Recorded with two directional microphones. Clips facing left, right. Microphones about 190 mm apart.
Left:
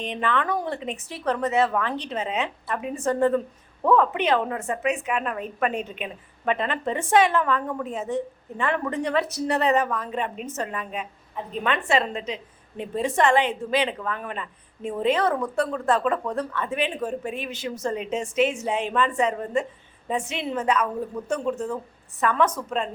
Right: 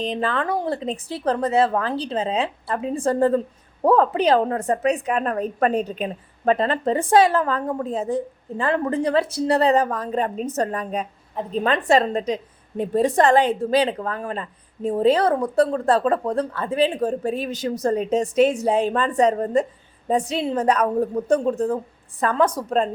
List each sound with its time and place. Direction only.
0.0 s a woman's voice: 35° right (ahead or behind)